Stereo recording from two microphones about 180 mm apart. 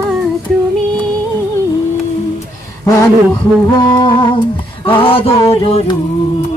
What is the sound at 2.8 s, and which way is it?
Speech, 20° left (ahead or behind).